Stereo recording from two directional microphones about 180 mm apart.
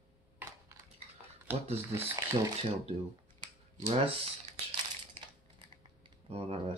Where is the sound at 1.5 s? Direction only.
15° right (ahead or behind).